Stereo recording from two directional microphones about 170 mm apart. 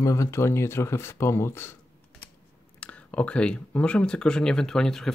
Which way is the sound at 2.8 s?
10° left (ahead or behind).